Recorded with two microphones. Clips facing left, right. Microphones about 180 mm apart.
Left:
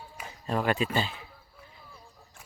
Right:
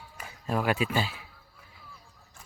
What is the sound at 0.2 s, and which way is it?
A man's voice, 5° right (ahead or behind).